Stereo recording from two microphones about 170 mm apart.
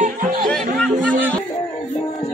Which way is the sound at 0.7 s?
5° left (ahead or behind).